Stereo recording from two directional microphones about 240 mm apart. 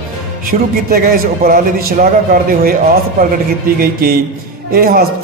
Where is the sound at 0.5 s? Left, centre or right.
Right.